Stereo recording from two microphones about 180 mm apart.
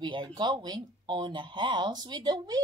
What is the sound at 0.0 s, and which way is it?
Speech, 25° right (ahead or behind).